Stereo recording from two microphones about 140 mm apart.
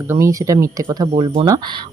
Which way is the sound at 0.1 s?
20° right (ahead or behind).